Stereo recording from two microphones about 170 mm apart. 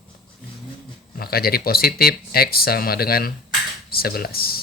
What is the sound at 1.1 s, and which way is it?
Speech, 65° left (ahead or behind).